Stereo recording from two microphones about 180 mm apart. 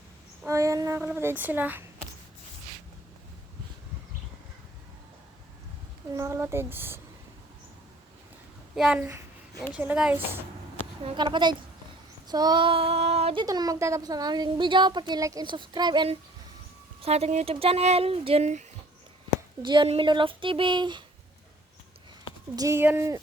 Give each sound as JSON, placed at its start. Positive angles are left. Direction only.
{"t": 0.4, "sound": "a child's voice", "side_deg": -15}
{"t": 6.1, "sound": "a child's voice", "side_deg": -15}
{"t": 8.7, "sound": "a child's voice", "side_deg": -5}
{"t": 11.0, "sound": "speech", "side_deg": -25}
{"t": 12.3, "sound": "child singing", "side_deg": -20}
{"t": 13.4, "sound": "speech", "side_deg": -20}
{"t": 17.0, "sound": "speech", "side_deg": -35}
{"t": 19.6, "sound": "speech", "side_deg": -25}
{"t": 22.5, "sound": "a child's voice", "side_deg": -15}